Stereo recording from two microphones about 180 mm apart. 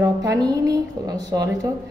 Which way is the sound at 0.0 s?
20° right (ahead or behind).